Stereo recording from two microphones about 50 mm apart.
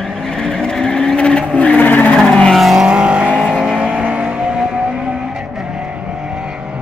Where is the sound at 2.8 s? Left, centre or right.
Centre.